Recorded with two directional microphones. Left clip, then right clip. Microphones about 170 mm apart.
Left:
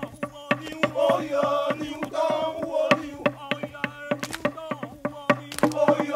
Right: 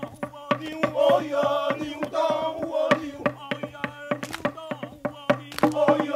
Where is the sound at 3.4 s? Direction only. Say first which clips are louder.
Left 1 dB; 5° right (ahead or behind).